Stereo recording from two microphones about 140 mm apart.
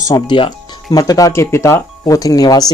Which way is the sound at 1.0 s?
25° left (ahead or behind).